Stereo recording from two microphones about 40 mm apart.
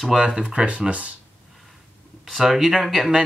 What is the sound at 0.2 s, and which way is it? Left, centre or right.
Speech, right.